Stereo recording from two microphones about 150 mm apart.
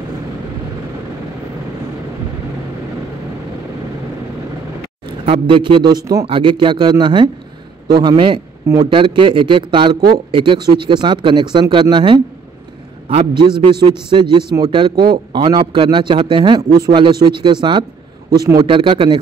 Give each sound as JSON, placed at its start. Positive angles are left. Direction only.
{"t": 5.0, "sound": "a man's voice", "side_deg": -40}